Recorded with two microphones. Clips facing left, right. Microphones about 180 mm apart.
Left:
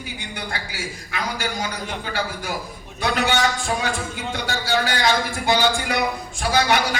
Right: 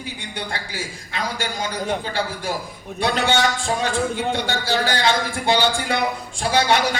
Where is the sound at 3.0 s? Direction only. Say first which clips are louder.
Right 1 dB; 30° right (ahead or behind).